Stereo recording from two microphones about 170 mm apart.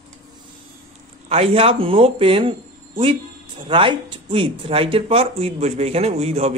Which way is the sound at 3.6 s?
30° right (ahead or behind).